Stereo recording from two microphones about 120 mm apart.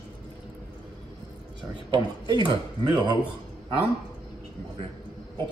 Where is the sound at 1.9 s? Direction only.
40° right (ahead or behind).